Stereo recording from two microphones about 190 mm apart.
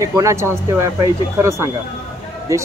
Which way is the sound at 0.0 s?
15° right (ahead or behind).